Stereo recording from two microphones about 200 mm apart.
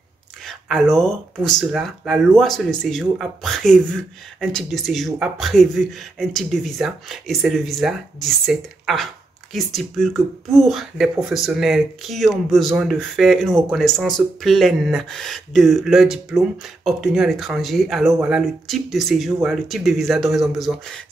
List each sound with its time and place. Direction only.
0.5 s speech: centre (ahead or behind)